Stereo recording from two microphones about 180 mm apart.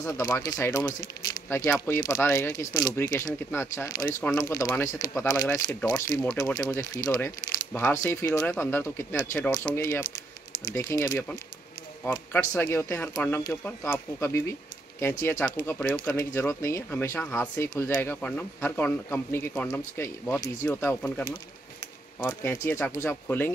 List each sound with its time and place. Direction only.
0.0 s speech: 15° left (ahead or behind)
22.4 s speech: 10° left (ahead or behind)